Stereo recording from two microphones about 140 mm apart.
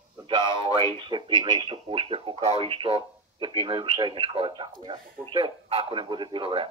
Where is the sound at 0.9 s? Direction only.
35° right (ahead or behind).